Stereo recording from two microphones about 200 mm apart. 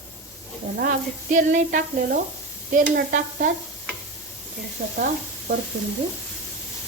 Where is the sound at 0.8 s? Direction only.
40° right (ahead or behind).